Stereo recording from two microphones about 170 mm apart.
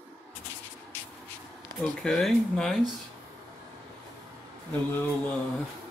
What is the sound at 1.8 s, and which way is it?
Speech, centre (ahead or behind).